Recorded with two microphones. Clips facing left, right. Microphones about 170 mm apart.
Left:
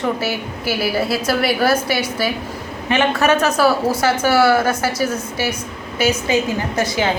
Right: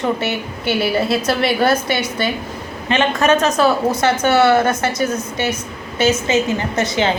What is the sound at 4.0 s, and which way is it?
Speech, 5° left (ahead or behind).